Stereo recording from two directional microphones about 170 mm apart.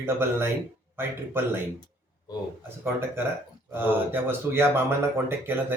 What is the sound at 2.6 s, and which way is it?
Speech, 15° right (ahead or behind).